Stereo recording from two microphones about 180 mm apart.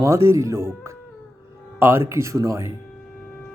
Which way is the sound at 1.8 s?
15° right (ahead or behind).